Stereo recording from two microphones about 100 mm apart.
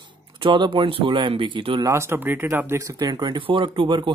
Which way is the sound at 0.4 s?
55° right (ahead or behind).